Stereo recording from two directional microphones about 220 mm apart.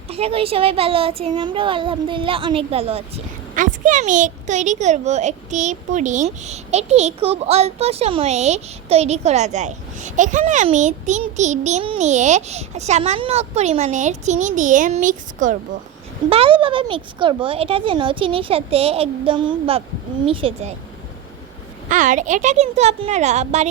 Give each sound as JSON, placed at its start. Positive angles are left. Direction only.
{"t": 0.1, "sound": "a woman's voice", "side_deg": -25}
{"t": 16.3, "sound": "speech", "side_deg": -25}
{"t": 21.8, "sound": "a woman's voice", "side_deg": -35}